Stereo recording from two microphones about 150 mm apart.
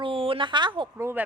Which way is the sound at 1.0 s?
15° right (ahead or behind).